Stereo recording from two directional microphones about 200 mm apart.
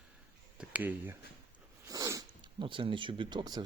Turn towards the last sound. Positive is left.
turn(degrees=-20)  # may be behind; listen again after turning